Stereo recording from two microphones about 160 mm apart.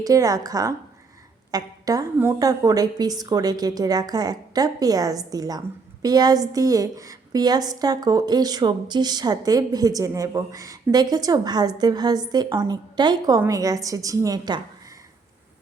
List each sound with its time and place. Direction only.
0.0 s a woman's voice: 20° right (ahead or behind)